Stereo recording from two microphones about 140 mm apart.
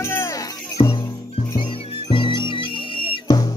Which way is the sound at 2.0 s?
35° left (ahead or behind).